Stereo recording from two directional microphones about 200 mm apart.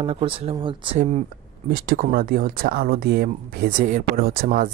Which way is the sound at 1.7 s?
45° right (ahead or behind).